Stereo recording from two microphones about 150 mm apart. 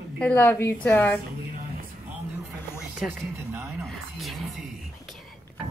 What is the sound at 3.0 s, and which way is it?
Music, 15° right (ahead or behind).